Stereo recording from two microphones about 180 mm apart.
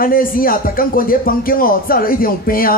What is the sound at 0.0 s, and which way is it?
A woman's voice, 50° left (ahead or behind).